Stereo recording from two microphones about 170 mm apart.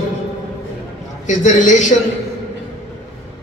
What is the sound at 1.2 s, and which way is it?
Speech, 45° left (ahead or behind).